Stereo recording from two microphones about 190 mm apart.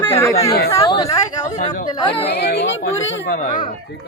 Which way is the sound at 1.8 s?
25° left (ahead or behind).